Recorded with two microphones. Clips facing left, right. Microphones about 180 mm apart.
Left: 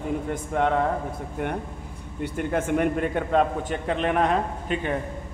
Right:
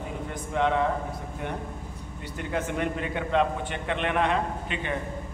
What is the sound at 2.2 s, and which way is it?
A man's voice, 50° left (ahead or behind).